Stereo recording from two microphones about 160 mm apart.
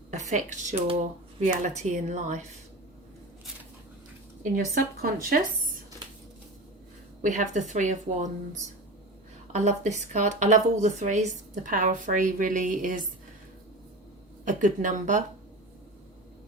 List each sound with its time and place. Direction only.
0.1 s a woman's voice: 45° right (ahead or behind)
4.7 s speech: 65° right (ahead or behind)
7.2 s a woman's voice: 55° right (ahead or behind)
9.5 s a woman's voice: 45° right (ahead or behind)
14.4 s a woman's voice: 50° right (ahead or behind)